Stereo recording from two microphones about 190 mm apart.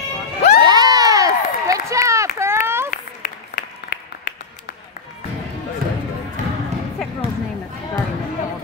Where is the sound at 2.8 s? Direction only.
45° left (ahead or behind).